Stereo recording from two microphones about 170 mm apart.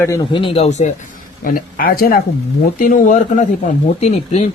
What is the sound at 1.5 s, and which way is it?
Speech, 55° left (ahead or behind).